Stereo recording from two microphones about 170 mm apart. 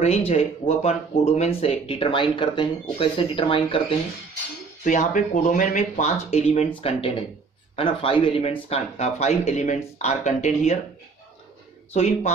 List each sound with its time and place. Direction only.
0.3 s speech: 35° left (ahead or behind)
4.8 s speech: 45° left (ahead or behind)
11.9 s speech: 40° left (ahead or behind)